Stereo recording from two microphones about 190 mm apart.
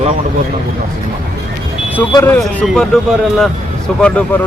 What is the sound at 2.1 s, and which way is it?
Speech, 10° left (ahead or behind).